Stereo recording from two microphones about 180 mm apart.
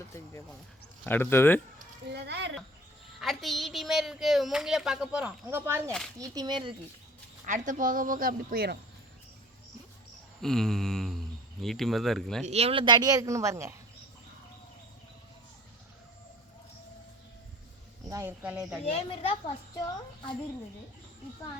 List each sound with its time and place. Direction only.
1.0 s speech: 10° left (ahead or behind)
2.1 s a sound: 70° right (ahead or behind)
3.2 s a woman's voice: centre (ahead or behind); by 6.7 s 25° right (ahead or behind)
7.4 s speech: 45° right (ahead or behind)
10.4 s a sound: centre (ahead or behind)
11.6 s a woman's voice: centre (ahead or behind)
12.5 s speech: 35° right (ahead or behind); by 13.7 s 15° right (ahead or behind)
18.1 s speech: 15° right (ahead or behind)
18.9 s a woman's voice: 30° left (ahead or behind)